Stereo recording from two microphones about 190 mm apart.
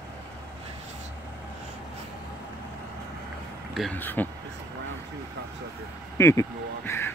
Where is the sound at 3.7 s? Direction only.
5° left (ahead or behind).